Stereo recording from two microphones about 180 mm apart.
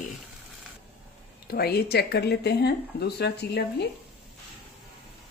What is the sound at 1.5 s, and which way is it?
Speech, 60° left (ahead or behind).